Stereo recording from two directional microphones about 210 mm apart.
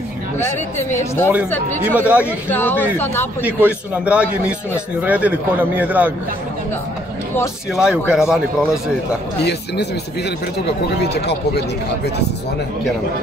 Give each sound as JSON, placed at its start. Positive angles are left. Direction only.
{"t": 0.4, "sound": "speech", "side_deg": 10}
{"t": 1.9, "sound": "speech", "side_deg": -5}
{"t": 2.5, "sound": "speech", "side_deg": 10}
{"t": 3.4, "sound": "a man's voice", "side_deg": -5}
{"t": 7.7, "sound": "a man's voice", "side_deg": -5}
{"t": 9.4, "sound": "speech", "side_deg": 50}
{"t": 11.0, "sound": "speech", "side_deg": 50}